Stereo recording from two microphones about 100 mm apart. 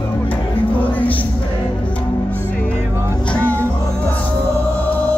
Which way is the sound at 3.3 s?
10° left (ahead or behind).